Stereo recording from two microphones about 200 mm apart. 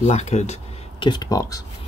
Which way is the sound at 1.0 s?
20° left (ahead or behind).